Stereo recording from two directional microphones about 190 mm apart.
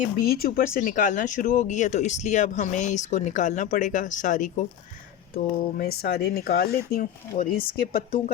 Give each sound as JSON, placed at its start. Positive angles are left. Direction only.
{"t": 0.2, "sound": "speech", "side_deg": 50}
{"t": 5.3, "sound": "speech", "side_deg": 55}